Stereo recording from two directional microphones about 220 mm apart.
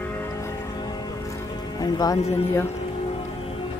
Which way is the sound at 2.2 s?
30° left (ahead or behind).